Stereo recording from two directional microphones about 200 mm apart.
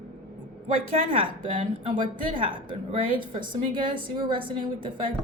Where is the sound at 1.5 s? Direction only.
40° right (ahead or behind).